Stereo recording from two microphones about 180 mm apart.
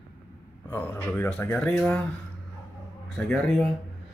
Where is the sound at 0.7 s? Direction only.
10° left (ahead or behind).